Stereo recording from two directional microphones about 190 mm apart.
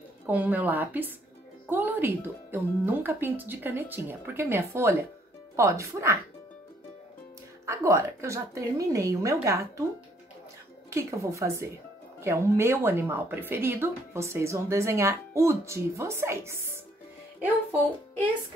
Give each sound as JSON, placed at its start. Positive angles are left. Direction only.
{"t": 0.3, "sound": "a woman's voice", "side_deg": -10}
{"t": 7.6, "sound": "a woman's voice", "side_deg": -15}
{"t": 10.9, "sound": "a woman's voice", "side_deg": -15}